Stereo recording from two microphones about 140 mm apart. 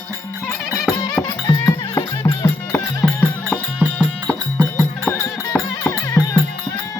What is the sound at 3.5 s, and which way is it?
Music, 10° right (ahead or behind).